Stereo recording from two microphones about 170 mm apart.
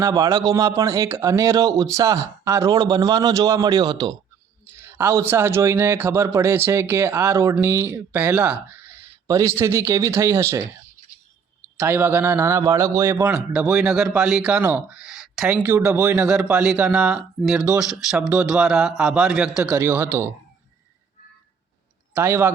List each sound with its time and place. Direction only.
0.0 s speech: 20° right (ahead or behind)
4.8 s a man's voice: 15° right (ahead or behind)
11.9 s a man's voice: 15° right (ahead or behind)
22.2 s a man's voice: 15° right (ahead or behind)